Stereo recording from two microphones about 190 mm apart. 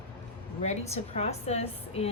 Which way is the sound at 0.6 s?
35° left (ahead or behind).